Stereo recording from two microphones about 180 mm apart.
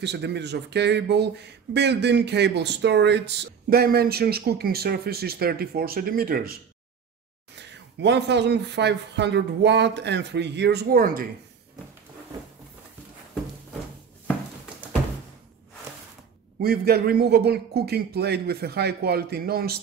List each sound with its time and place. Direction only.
0.0 s speech: 70° right (ahead or behind)
7.5 s speech: 70° right (ahead or behind); by 11.2 s 55° right (ahead or behind)
16.6 s a man's voice: 60° right (ahead or behind)